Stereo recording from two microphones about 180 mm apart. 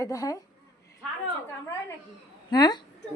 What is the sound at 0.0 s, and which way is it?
Speech, 20° left (ahead or behind).